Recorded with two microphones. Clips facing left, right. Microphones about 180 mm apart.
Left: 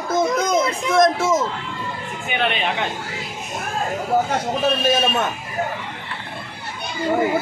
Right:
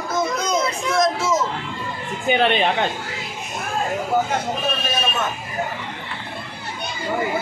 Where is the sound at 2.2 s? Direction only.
35° right (ahead or behind).